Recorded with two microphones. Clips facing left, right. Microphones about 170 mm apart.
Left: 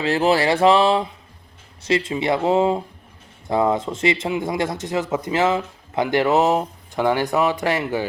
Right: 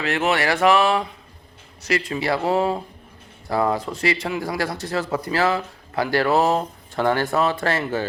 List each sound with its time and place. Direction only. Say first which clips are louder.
0.0 s speech: left 3 dB; 30° left (ahead or behind); by 8.0 s 15° left (ahead or behind)